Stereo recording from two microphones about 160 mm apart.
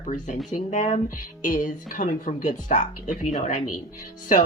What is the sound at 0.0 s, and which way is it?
Speech, 50° left (ahead or behind).